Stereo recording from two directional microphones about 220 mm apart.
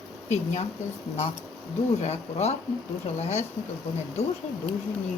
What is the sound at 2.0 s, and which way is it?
A woman's voice, 30° left (ahead or behind).